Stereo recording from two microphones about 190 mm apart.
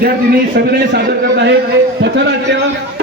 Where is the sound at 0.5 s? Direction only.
60° right (ahead or behind).